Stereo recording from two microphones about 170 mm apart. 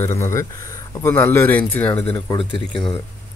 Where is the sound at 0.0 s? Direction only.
15° left (ahead or behind).